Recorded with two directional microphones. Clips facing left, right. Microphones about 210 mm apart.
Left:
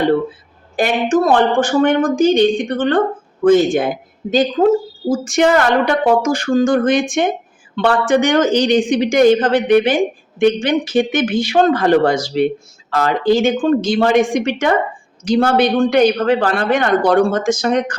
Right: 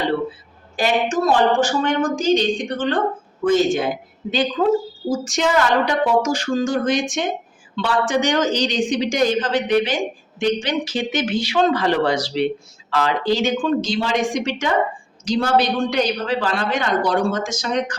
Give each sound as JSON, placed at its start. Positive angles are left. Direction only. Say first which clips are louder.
{"t": 0.8, "sound": "speech", "louder": "left 4 dB", "side_deg": 55}